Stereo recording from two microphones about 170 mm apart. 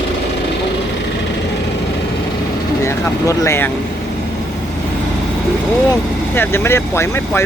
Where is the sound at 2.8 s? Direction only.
15° left (ahead or behind).